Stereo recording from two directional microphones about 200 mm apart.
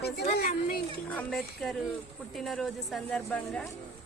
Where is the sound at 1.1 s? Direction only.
Centre (ahead or behind).